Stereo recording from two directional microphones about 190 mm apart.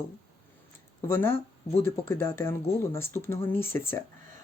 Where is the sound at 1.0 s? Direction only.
10° left (ahead or behind).